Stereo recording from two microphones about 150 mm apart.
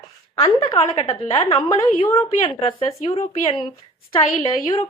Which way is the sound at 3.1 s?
35° left (ahead or behind).